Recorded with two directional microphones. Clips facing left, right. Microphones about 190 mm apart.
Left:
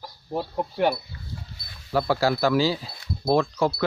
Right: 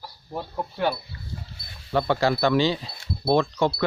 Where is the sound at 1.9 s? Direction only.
5° left (ahead or behind).